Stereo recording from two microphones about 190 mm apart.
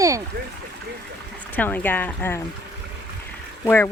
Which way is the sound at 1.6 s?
10° left (ahead or behind).